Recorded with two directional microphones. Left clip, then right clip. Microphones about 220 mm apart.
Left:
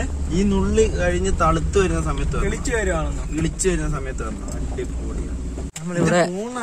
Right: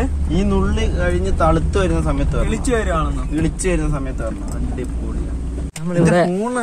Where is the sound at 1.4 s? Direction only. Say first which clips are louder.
Right 2 dB; 30° right (ahead or behind).